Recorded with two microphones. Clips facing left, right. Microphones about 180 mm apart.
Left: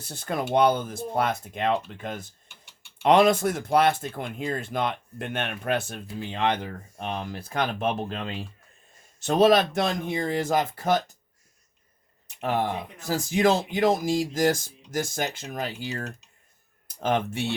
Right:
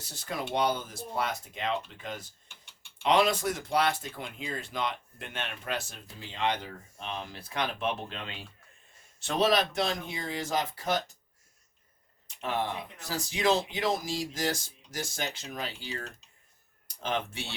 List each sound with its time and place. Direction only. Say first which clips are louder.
0.0 s speech: left 6 dB; 55° left (ahead or behind)
12.4 s speech: left 6 dB; 45° left (ahead or behind)